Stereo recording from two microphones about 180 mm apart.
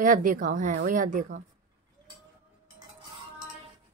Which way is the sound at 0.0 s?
50° right (ahead or behind).